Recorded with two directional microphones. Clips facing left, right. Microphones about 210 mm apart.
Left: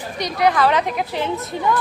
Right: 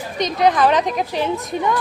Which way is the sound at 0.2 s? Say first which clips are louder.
Right 2 dB; 20° right (ahead or behind).